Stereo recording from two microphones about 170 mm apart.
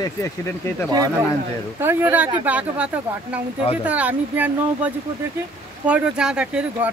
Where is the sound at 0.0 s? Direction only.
15° left (ahead or behind).